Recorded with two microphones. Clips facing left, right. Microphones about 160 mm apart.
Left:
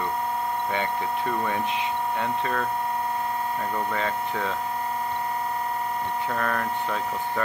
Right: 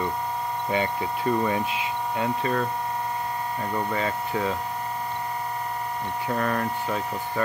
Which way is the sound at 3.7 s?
10° right (ahead or behind).